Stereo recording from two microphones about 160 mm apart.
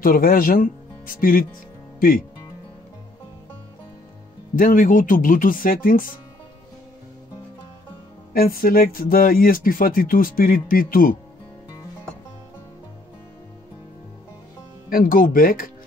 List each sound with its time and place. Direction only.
0.0 s speech: 65° left (ahead or behind)
4.6 s speech: 55° left (ahead or behind)
8.3 s speech: 65° left (ahead or behind)
14.9 s speech: 60° left (ahead or behind)